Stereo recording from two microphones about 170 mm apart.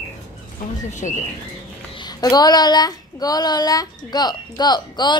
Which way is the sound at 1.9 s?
25° left (ahead or behind).